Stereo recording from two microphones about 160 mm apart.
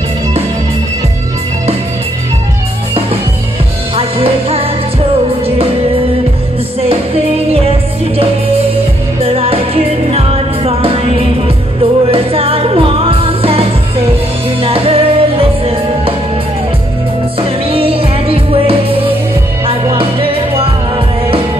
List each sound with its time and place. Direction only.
3.9 s music: 35° right (ahead or behind)
9.2 s music: 35° right (ahead or behind)
17.4 s music: 35° right (ahead or behind)